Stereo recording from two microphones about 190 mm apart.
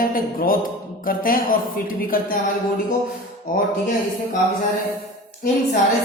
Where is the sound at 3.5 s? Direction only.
45° left (ahead or behind).